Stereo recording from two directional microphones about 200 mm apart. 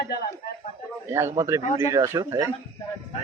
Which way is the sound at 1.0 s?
15° right (ahead or behind).